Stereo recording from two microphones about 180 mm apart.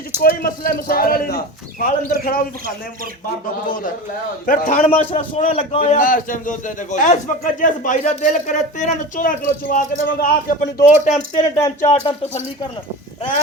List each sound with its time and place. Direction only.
0.2 s a man's voice: 55° left (ahead or behind)
4.4 s a man's voice: 50° left (ahead or behind)
4.9 s a man's voice: 35° left (ahead or behind)
5.8 s a man's voice: 50° left (ahead or behind)
11.5 s speech: 15° left (ahead or behind)